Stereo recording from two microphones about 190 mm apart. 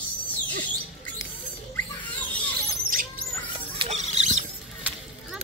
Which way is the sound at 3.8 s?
35° right (ahead or behind).